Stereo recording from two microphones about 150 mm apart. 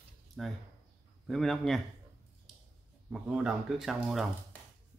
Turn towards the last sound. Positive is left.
turn(degrees=0)  # may be behind; listen again after turning